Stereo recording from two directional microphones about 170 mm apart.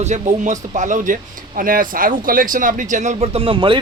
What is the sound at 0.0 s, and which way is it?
Speech, 45° right (ahead or behind).